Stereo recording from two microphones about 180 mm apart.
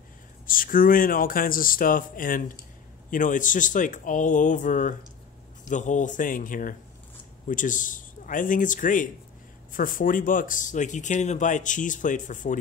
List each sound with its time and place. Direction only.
0.5 s speech: 50° left (ahead or behind)